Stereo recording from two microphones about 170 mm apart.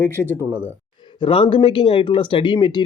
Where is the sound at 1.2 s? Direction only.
30° left (ahead or behind).